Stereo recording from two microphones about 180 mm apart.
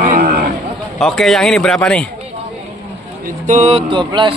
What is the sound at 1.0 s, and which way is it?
A man's voice, 5° left (ahead or behind).